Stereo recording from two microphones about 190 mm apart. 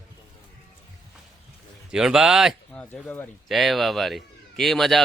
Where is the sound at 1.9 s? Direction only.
5° right (ahead or behind).